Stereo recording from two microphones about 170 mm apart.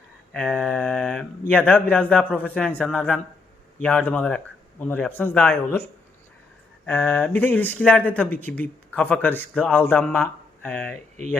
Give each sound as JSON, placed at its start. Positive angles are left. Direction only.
{"t": 0.3, "sound": "speech", "side_deg": 0}